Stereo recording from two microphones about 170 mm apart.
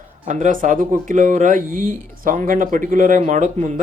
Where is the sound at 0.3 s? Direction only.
45° right (ahead or behind).